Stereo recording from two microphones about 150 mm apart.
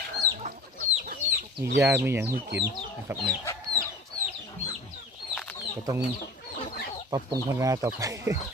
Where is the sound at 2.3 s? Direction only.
90° right.